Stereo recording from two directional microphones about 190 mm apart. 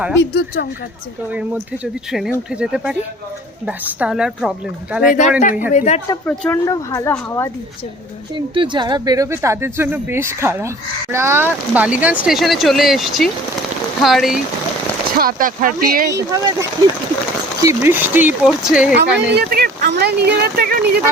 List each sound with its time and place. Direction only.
0.2 s speech: 60° left (ahead or behind)
1.3 s speech: 5° right (ahead or behind)
5.4 s speech: 40° left (ahead or behind)
6.2 s a woman's voice: 5° left (ahead or behind)
6.7 s a woman's voice: 15° left (ahead or behind)
8.4 s a woman's voice: 25° right (ahead or behind); by 14.4 s centre (ahead or behind)
15.2 s speech: 50° right (ahead or behind)
16.1 s a woman's voice: 15° right (ahead or behind)
18.9 s speech: 55° right (ahead or behind)